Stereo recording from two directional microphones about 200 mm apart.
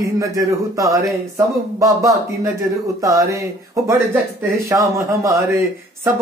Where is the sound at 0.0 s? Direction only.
15° right (ahead or behind).